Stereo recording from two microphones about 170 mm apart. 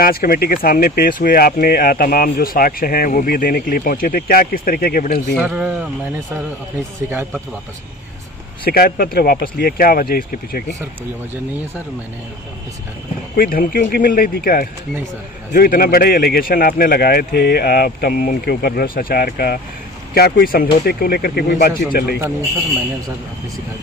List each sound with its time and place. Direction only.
0.0 s speech: 60° left (ahead or behind)
5.3 s speech: 5° right (ahead or behind)
7.1 s speech: 10° right (ahead or behind)
8.6 s speech: 65° left (ahead or behind)
13.4 s speech: 55° left (ahead or behind)